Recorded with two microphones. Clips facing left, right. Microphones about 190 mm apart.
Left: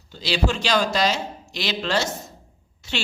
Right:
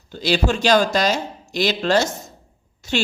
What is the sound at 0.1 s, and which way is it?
A woman's voice, 50° right (ahead or behind).